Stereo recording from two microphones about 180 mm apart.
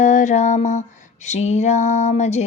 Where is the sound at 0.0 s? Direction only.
45° left (ahead or behind).